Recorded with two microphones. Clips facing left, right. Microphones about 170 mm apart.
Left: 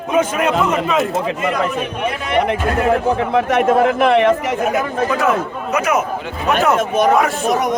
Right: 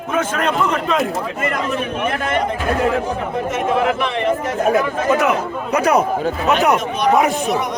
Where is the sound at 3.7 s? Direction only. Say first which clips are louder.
Left 4 dB; 45° left (ahead or behind).